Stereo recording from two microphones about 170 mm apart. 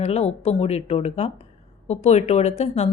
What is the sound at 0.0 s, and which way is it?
Speech, 40° left (ahead or behind).